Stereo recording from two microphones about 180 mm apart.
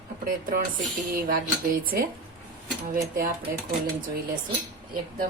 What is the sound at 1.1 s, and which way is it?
Speech, 50° right (ahead or behind).